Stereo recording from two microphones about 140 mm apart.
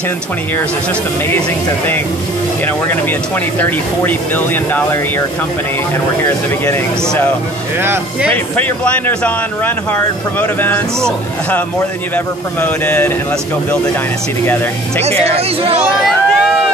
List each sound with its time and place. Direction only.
2.6 s speech: 15° left (ahead or behind)
7.8 s speech: 15° right (ahead or behind)
8.5 s speech: 10° left (ahead or behind)
10.4 s speech: 15° left (ahead or behind)
12.5 s speech: 10° left (ahead or behind)
14.4 s speech: 15° left (ahead or behind)
15.0 s speech: 45° right (ahead or behind)
16.0 s a sound: 5° right (ahead or behind)